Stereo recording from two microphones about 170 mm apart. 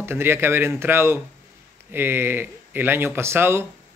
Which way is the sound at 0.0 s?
15° right (ahead or behind).